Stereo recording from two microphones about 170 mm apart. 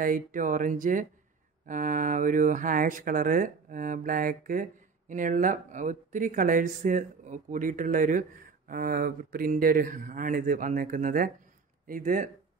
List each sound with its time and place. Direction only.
0.0 s speech: 50° right (ahead or behind)